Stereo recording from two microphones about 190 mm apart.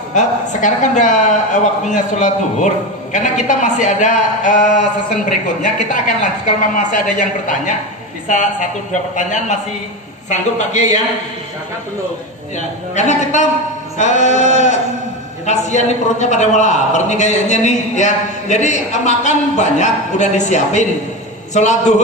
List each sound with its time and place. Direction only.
0.1 s a man's voice: 40° left (ahead or behind)
6.4 s a man's voice: 40° left (ahead or behind)
9.1 s a man's voice: 40° left (ahead or behind)
12.5 s a man's voice: 40° left (ahead or behind)